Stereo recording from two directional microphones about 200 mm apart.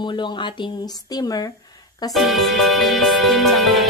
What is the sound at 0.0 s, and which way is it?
Speech, 25° left (ahead or behind).